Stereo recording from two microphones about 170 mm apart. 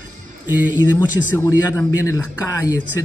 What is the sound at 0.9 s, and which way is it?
A man's voice, 15° left (ahead or behind).